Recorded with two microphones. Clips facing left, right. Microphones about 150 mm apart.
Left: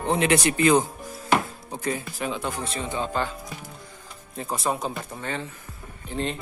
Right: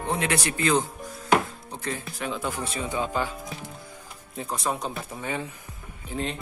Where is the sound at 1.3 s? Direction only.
10° left (ahead or behind).